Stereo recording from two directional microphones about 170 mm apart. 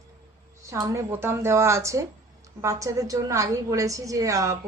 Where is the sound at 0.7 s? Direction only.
15° right (ahead or behind).